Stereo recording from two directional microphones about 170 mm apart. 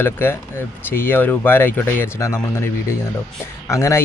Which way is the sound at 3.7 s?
15° left (ahead or behind).